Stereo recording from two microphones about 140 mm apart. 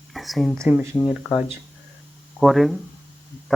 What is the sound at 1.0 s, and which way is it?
Speech, centre (ahead or behind).